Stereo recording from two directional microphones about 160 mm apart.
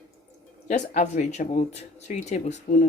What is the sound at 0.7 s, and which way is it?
Speech, 45° left (ahead or behind).